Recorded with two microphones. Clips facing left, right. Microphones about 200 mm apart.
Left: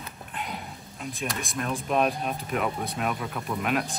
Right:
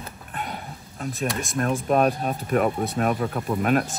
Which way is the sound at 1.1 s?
Centre (ahead or behind).